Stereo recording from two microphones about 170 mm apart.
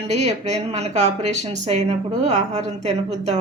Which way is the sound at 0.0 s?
40° right (ahead or behind).